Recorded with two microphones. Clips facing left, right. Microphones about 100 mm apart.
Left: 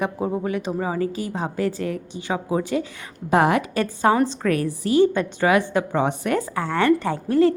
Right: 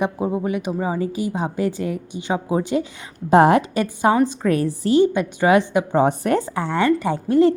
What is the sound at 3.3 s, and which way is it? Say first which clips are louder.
Speech: right 5 dB; 30° right (ahead or behind).